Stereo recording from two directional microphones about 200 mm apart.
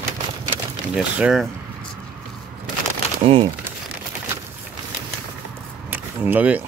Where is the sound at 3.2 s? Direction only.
25° right (ahead or behind).